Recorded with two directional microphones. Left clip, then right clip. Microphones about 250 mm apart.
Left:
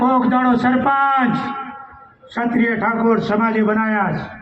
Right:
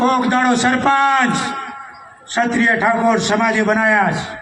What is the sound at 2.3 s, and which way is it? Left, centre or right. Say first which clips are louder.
A man's voice: right 4 dB; right.